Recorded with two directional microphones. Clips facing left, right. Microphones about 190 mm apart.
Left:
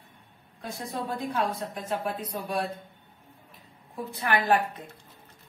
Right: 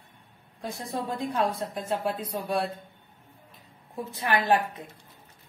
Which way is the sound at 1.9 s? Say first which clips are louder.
Right 2 dB; 25° right (ahead or behind).